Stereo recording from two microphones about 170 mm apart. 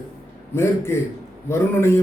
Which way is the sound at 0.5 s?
15° left (ahead or behind).